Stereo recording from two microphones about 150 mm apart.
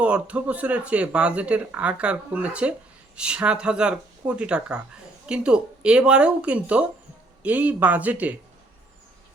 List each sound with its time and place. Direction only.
0.0 s speech: 10° right (ahead or behind)